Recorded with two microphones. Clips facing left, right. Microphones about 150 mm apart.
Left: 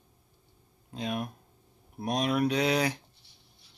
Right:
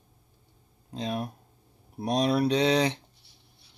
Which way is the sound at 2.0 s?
35° right (ahead or behind).